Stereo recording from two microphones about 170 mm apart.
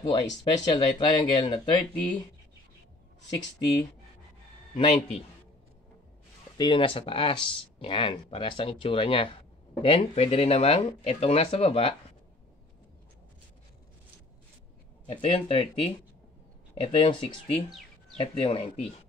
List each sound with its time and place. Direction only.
0.0 s speech: 25° left (ahead or behind)
4.7 s speech: 30° left (ahead or behind)
6.6 s speech: 30° left (ahead or behind)
15.0 s speech: 35° left (ahead or behind)